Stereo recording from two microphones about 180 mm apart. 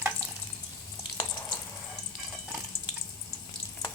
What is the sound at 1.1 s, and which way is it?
Frying, 25° left (ahead or behind).